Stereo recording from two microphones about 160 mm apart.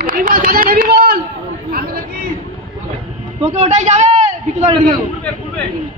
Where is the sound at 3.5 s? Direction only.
45° right (ahead or behind).